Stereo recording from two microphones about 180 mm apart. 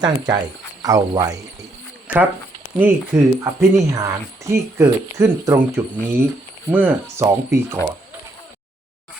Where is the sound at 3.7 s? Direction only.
15° right (ahead or behind).